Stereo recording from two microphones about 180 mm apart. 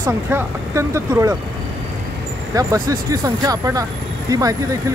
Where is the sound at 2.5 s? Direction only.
20° right (ahead or behind).